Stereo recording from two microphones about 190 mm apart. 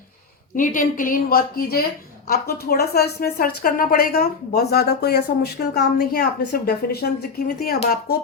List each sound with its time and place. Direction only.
0.5 s a woman's voice: 45° left (ahead or behind)